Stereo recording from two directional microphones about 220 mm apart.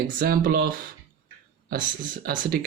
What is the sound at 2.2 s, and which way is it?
Speech, 40° right (ahead or behind).